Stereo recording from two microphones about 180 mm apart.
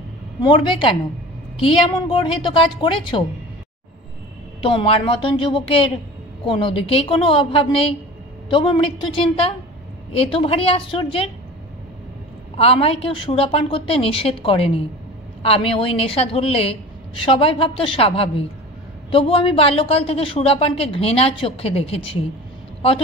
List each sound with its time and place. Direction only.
0.4 s a woman's voice: 30° left (ahead or behind)
4.6 s a woman's voice: 30° left (ahead or behind)
12.5 s a woman's voice: 35° left (ahead or behind)